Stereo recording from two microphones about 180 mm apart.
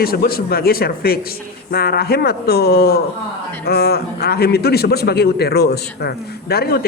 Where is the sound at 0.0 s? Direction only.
60° left (ahead or behind).